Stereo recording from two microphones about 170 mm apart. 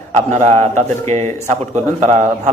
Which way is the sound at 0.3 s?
40° right (ahead or behind).